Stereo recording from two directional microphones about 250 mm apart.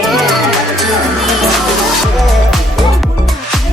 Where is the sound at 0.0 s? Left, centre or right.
Centre.